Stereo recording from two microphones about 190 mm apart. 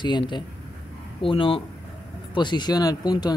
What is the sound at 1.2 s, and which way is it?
Speech, 25° left (ahead or behind).